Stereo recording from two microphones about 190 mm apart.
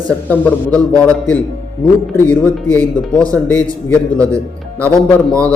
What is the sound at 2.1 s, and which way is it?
A man's voice, 5° left (ahead or behind).